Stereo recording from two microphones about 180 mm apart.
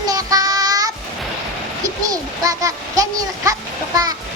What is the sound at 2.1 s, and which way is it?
A child's voice, 20° right (ahead or behind).